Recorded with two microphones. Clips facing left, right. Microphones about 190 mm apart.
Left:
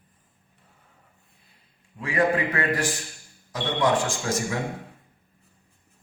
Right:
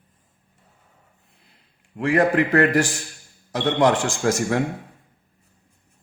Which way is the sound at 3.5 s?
75° right (ahead or behind).